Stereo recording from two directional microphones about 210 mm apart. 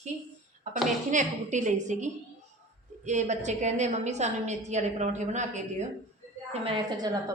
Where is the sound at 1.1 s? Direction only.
35° right (ahead or behind).